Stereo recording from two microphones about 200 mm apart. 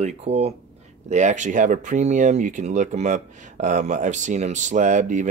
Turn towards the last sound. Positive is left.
turn(degrees=-40)  # may be behind; listen again after turning